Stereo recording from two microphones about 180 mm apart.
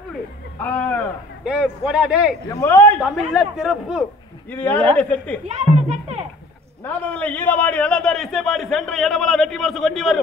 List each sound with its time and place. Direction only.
0.7 s a sound: 10° left (ahead or behind)
1.4 s a man's voice: 5° right (ahead or behind)
2.5 s a man's voice: 15° left (ahead or behind)
3.0 s a man's voice: 5° right (ahead or behind)
4.5 s a man's voice: 10° left (ahead or behind)
5.5 s speech: 40° right (ahead or behind)
6.8 s a man's voice: 10° left (ahead or behind)